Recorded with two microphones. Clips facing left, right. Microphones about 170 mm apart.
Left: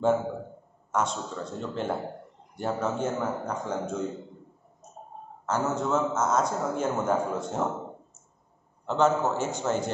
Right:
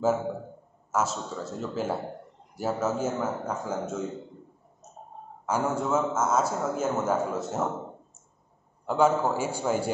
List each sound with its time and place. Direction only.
0.9 s a man's voice: 5° right (ahead or behind)
5.5 s a man's voice: 10° right (ahead or behind)
8.8 s a man's voice: 10° right (ahead or behind)